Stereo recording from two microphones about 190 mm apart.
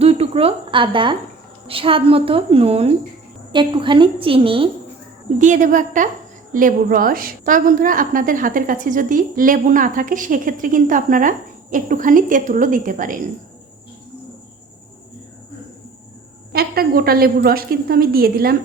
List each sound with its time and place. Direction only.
0.0 s a woman's voice: 30° right (ahead or behind)
5.4 s a woman's voice: 40° right (ahead or behind)
16.5 s a woman's voice: 55° right (ahead or behind)